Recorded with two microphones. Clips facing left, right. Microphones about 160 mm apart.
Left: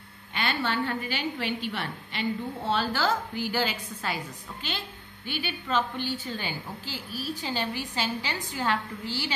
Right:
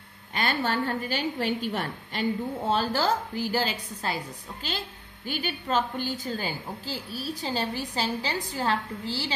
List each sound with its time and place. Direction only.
0.3 s a woman's voice: 40° right (ahead or behind)